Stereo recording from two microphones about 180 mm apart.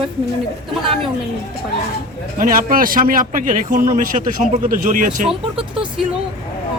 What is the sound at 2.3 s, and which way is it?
A man's voice, 50° right (ahead or behind).